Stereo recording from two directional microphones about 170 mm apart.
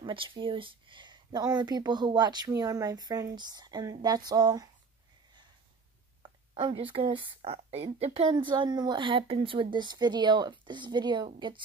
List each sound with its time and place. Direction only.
0.0 s speech: 30° right (ahead or behind)
6.2 s speech: 30° right (ahead or behind)